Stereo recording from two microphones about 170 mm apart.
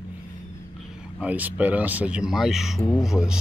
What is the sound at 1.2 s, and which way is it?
Speech, 10° right (ahead or behind).